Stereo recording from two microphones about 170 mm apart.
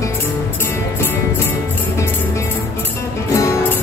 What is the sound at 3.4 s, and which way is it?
Music, 15° left (ahead or behind).